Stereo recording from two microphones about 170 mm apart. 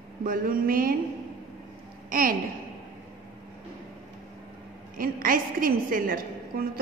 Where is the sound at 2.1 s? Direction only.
55° right (ahead or behind).